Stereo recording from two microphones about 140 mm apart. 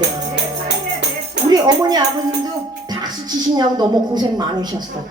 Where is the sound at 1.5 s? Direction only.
30° right (ahead or behind).